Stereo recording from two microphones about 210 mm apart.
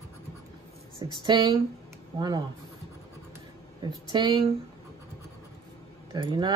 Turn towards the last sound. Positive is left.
turn(degrees=-20)  # may be behind; listen again after turning